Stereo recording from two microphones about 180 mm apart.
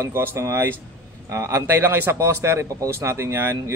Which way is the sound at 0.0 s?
10° right (ahead or behind).